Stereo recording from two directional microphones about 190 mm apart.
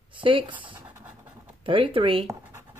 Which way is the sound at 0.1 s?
25° right (ahead or behind).